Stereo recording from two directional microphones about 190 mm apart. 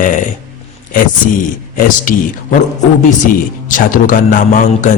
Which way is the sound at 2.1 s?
45° left (ahead or behind).